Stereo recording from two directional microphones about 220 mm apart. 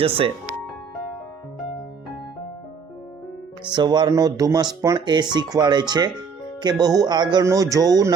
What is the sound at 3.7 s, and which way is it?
Speech, 20° right (ahead or behind).